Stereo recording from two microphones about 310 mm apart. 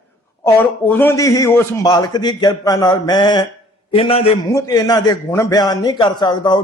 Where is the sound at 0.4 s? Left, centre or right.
Centre.